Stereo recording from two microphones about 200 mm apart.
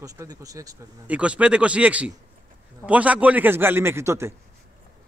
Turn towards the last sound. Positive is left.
turn(degrees=-15)  # may be behind; listen again after turning